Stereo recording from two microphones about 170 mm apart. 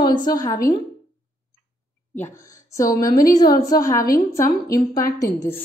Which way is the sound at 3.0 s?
55° left (ahead or behind).